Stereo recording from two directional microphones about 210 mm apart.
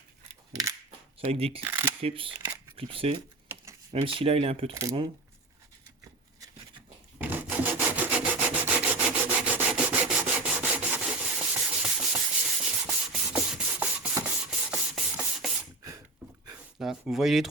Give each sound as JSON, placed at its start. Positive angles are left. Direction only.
{"t": 0.9, "sound": "a sound", "side_deg": -25}
{"t": 1.6, "sound": "speech", "side_deg": -10}
{"t": 2.0, "sound": "speech", "side_deg": -25}
{"t": 4.7, "sound": "speech", "side_deg": -15}
{"t": 7.2, "sound": "wood", "side_deg": -10}
{"t": 16.7, "sound": "a sound", "side_deg": 0}